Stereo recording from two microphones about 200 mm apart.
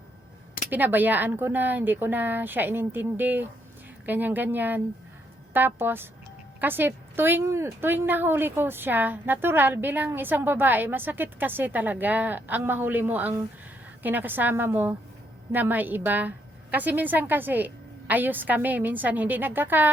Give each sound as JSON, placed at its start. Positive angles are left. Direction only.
{"t": 0.7, "sound": "a woman's voice", "side_deg": -10}